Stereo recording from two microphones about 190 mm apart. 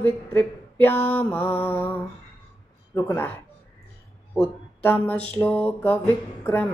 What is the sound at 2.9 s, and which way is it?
Mantra, 15° left (ahead or behind).